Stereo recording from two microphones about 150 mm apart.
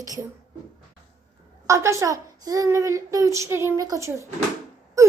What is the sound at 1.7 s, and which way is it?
A child's voice, 20° right (ahead or behind).